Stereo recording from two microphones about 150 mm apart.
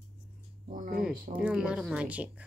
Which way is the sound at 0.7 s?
65° right (ahead or behind).